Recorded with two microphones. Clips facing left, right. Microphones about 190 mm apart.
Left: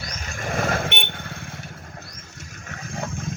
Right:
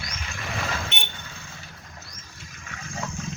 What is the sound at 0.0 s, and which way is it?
Vehicle, 40° left (ahead or behind).